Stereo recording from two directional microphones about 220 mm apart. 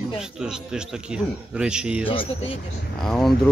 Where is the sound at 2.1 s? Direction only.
25° left (ahead or behind).